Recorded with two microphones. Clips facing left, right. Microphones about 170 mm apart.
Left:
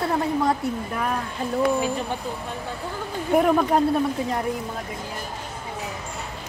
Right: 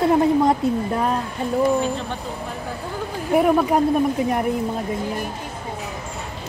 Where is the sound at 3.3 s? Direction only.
5° right (ahead or behind).